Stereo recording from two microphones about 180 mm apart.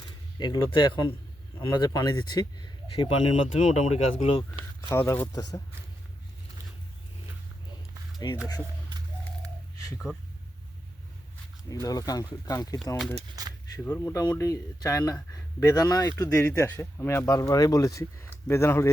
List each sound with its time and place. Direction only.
0.3 s speech: 25° left (ahead or behind)
4.8 s speech: 15° left (ahead or behind)
8.2 s speech: 20° left (ahead or behind)
11.7 s speech: 20° left (ahead or behind)
13.4 s a sound: 20° right (ahead or behind)
13.7 s speech: 15° left (ahead or behind)